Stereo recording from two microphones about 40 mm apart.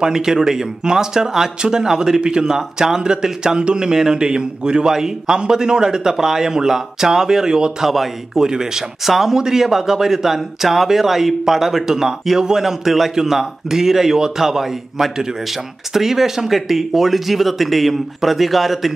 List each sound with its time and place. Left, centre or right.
0.0 s speech: centre